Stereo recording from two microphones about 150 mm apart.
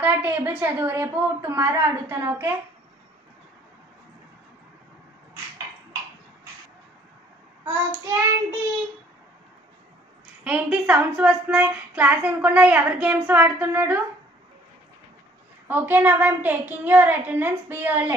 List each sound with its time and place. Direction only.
0.0 s a sound: 10° right (ahead or behind)
0.4 s a woman's voice: 10° right (ahead or behind)
7.6 s a woman's voice: 15° right (ahead or behind)
10.4 s a woman's voice: 10° right (ahead or behind)
15.7 s a woman's voice: 15° right (ahead or behind)